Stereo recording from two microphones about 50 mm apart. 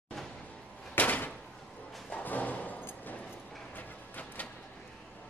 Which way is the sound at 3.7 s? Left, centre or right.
Left.